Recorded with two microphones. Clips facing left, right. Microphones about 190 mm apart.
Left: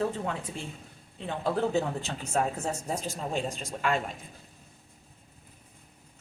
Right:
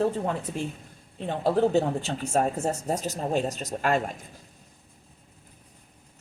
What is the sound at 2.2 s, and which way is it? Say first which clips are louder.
Speech: right 4 dB; 40° right (ahead or behind).